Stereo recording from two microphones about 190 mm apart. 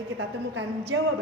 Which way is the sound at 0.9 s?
90° right.